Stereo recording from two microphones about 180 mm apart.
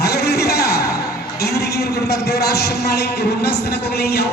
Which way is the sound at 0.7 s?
60° left (ahead or behind).